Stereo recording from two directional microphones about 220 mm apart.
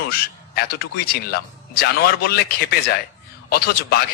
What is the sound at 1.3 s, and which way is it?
Speech, 45° left (ahead or behind).